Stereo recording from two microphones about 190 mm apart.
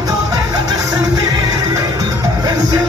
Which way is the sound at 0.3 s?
20° right (ahead or behind).